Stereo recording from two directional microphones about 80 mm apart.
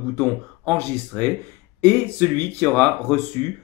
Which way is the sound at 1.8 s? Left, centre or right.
Left.